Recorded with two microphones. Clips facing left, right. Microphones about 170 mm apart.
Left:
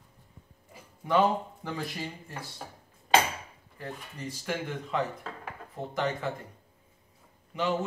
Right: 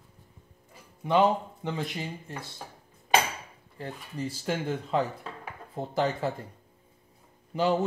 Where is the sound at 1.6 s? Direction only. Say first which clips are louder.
Right 4 dB; 20° right (ahead or behind).